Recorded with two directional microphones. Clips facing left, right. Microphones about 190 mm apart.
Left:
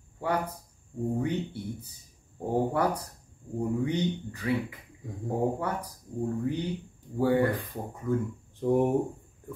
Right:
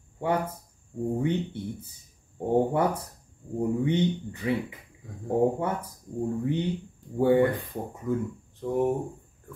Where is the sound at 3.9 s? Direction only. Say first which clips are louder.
Right 4 dB; 25° right (ahead or behind).